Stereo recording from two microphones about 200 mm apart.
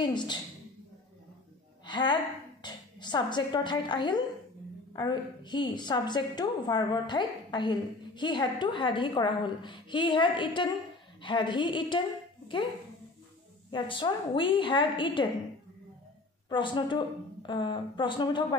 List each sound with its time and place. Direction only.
0.0 s a woman's voice: 20° left (ahead or behind)
1.9 s a woman's voice: 25° left (ahead or behind)
13.7 s a woman's voice: 25° left (ahead or behind)
16.4 s a woman's voice: 25° left (ahead or behind)